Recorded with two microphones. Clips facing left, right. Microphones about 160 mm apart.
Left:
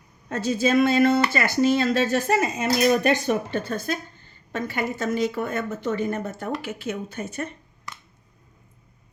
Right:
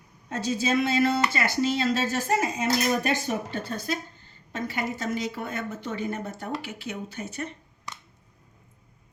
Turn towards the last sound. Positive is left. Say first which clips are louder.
# left 3 dB
turn(degrees=50)  # may be behind; listen again after turning